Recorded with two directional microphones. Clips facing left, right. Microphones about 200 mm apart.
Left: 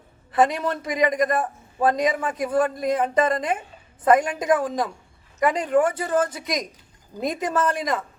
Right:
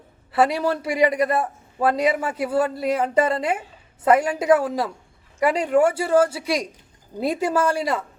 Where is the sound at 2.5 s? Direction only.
30° right (ahead or behind).